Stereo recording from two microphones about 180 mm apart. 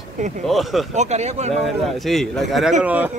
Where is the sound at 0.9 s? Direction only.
40° right (ahead or behind).